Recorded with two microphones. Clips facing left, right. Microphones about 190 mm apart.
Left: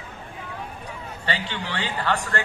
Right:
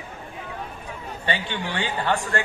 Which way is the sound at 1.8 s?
15° right (ahead or behind).